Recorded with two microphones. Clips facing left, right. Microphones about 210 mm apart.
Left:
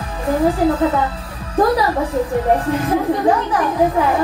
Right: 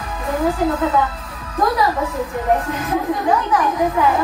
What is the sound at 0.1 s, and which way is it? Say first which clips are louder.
A woman's voice: left 3 dB; 30° left (ahead or behind).